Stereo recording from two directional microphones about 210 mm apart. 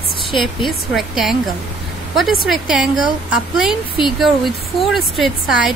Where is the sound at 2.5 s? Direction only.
Centre (ahead or behind).